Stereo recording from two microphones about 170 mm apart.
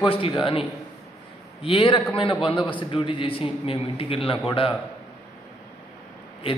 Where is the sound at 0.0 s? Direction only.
30° left (ahead or behind).